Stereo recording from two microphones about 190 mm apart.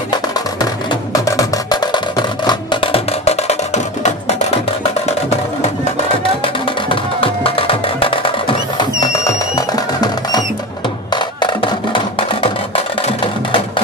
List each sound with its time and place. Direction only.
0.1 s music: 20° left (ahead or behind); by 4.4 s 35° left (ahead or behind)
6.4 s music: 25° left (ahead or behind)